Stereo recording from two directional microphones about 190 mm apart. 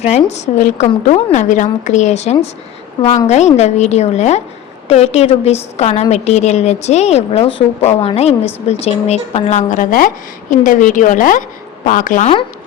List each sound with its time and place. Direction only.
0.0 s a woman's voice: 35° left (ahead or behind)